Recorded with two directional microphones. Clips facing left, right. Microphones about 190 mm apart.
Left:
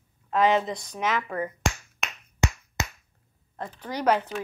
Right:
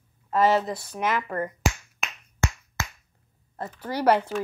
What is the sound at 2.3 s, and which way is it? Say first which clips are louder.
Finger snapping: left 2 dB; 15° left (ahead or behind).